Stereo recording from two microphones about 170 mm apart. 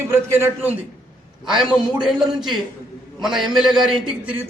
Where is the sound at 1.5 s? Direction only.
Centre (ahead or behind).